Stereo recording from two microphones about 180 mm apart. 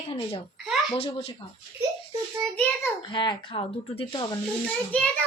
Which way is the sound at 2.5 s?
10° left (ahead or behind).